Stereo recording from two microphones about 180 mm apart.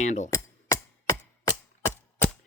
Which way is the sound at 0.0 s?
40° left (ahead or behind).